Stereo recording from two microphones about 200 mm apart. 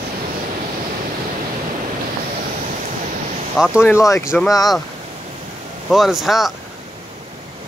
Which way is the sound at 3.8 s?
15° left (ahead or behind).